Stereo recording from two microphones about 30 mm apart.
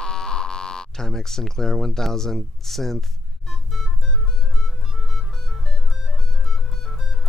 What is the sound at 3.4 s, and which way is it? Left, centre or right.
Organ, centre.